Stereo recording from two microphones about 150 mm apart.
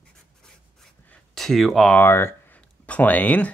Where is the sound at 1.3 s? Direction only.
Centre (ahead or behind).